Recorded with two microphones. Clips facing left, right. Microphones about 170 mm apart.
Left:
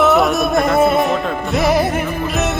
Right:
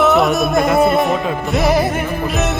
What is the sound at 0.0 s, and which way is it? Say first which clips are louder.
Music: even; centre (ahead or behind).